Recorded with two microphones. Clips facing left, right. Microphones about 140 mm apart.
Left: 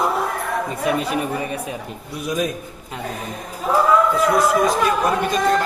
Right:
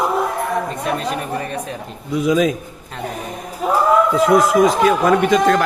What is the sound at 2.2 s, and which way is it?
Speech, 90° right.